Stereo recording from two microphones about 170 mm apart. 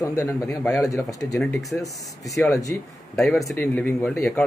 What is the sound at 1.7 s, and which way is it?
A man's voice, 5° left (ahead or behind).